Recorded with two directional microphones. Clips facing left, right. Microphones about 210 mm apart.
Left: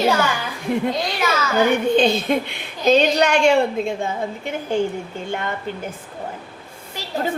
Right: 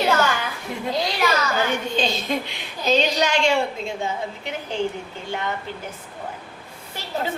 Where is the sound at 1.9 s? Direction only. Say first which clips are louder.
Left 7 dB; 55° left (ahead or behind).